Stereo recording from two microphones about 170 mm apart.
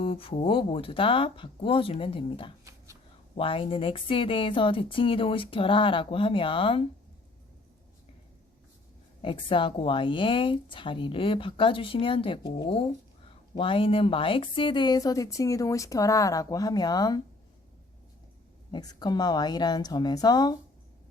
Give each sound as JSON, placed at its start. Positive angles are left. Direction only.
{"t": 0.0, "sound": "speech", "side_deg": 30}
{"t": 2.6, "sound": "a sound", "side_deg": -20}
{"t": 3.3, "sound": "speech", "side_deg": 30}
{"t": 9.2, "sound": "speech", "side_deg": 30}
{"t": 18.7, "sound": "speech", "side_deg": 25}